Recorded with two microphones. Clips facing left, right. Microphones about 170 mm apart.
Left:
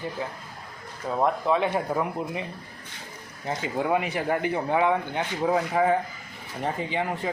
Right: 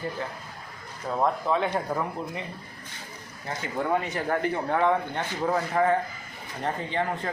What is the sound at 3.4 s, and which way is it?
Speech, 15° left (ahead or behind).